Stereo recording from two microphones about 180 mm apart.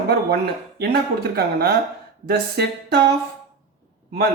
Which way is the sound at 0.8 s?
60° right (ahead or behind).